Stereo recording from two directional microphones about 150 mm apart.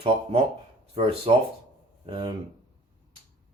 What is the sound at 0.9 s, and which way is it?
Speech, 35° right (ahead or behind).